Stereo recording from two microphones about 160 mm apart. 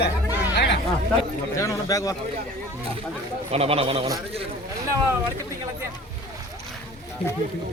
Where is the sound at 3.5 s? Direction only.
40° right (ahead or behind).